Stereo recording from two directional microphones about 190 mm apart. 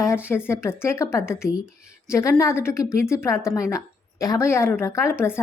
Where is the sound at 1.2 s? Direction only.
5° right (ahead or behind).